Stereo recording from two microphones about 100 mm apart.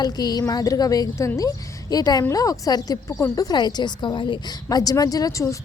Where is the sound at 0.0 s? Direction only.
45° left (ahead or behind).